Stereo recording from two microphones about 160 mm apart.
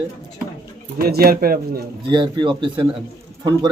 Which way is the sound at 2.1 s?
30° right (ahead or behind).